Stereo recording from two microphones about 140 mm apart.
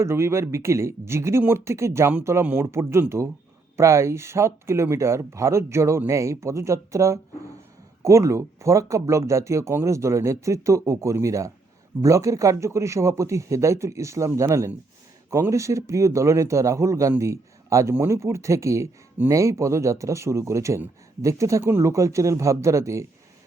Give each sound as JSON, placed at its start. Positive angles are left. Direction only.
{"t": 0.0, "sound": "speech", "side_deg": -20}